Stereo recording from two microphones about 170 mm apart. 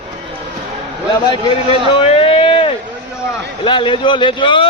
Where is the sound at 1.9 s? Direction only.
35° left (ahead or behind).